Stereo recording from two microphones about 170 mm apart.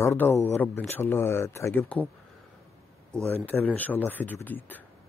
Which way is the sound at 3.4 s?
10° left (ahead or behind).